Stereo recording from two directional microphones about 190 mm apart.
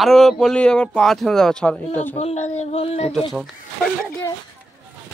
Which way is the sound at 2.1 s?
35° left (ahead or behind).